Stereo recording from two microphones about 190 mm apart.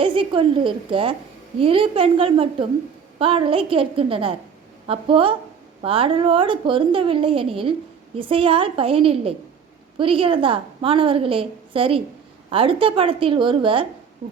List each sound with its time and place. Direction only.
0.0 s a woman's voice: 25° right (ahead or behind)